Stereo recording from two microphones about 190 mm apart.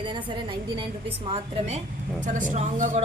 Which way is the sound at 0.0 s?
25° right (ahead or behind).